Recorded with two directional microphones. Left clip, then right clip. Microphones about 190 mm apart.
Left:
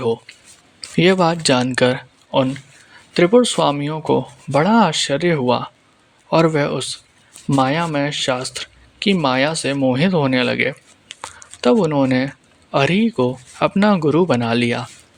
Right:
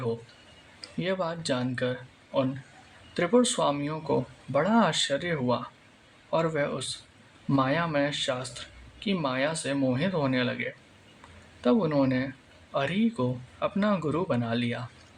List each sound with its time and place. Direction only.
0.9 s speech: 50° left (ahead or behind)